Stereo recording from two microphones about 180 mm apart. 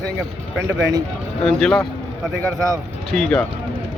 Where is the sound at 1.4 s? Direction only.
5° left (ahead or behind).